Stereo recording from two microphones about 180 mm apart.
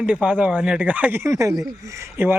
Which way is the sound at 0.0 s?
5° right (ahead or behind).